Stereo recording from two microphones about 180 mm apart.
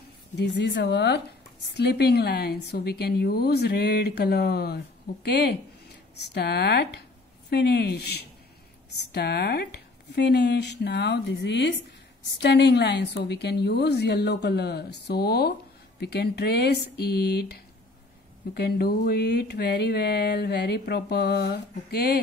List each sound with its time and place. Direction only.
0.4 s speech: 70° left (ahead or behind)